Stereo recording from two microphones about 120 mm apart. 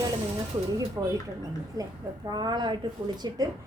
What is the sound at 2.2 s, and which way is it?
Speech, 35° right (ahead or behind).